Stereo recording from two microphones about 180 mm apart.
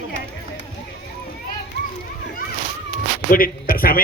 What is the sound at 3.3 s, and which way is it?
Speech, 55° left (ahead or behind).